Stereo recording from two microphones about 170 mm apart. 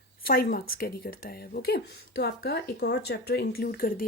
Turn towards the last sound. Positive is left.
turn(degrees=60)  # may be behind; listen again after turning